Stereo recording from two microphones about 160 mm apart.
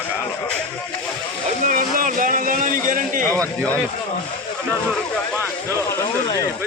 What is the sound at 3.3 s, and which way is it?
Speech, 10° left (ahead or behind).